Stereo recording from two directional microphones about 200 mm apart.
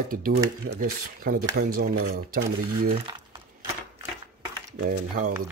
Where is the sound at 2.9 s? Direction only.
25° right (ahead or behind).